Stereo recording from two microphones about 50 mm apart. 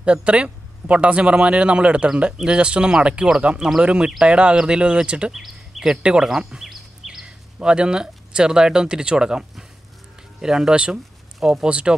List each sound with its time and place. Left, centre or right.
0.0 s speech: right
5.3 s speech: centre
6.6 s a sound: centre
7.5 s speech: centre
11.3 s speech: centre
11.6 s speech: centre